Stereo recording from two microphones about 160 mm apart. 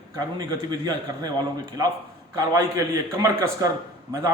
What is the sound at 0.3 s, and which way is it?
A man's voice, 25° right (ahead or behind).